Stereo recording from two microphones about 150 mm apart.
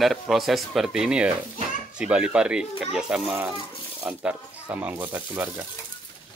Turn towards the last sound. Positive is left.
turn(degrees=-15)  # may be behind; listen again after turning